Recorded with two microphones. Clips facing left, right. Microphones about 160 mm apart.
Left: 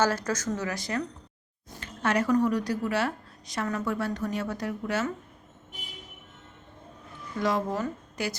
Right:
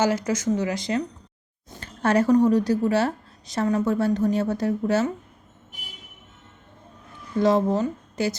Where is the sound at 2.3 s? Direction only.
25° right (ahead or behind).